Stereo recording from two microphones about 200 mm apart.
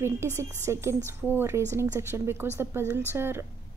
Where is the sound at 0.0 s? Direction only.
15° right (ahead or behind).